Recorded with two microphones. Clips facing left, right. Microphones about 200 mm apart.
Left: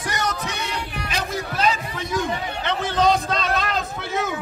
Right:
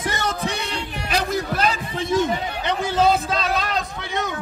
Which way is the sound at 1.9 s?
25° right (ahead or behind).